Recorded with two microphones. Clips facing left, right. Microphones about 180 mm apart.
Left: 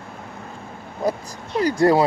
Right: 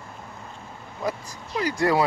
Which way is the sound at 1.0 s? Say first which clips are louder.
Left 6 dB; 35° left (ahead or behind).